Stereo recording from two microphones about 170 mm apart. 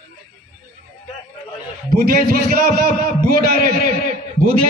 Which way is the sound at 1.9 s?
60° right (ahead or behind).